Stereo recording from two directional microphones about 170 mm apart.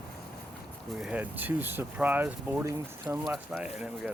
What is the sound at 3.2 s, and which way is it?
Speech, 5° right (ahead or behind).